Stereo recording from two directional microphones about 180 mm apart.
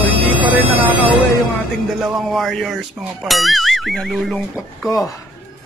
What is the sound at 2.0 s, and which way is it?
Speech, centre (ahead or behind).